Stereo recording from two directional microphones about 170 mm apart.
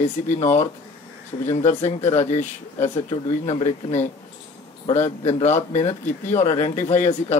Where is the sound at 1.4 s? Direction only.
40° left (ahead or behind).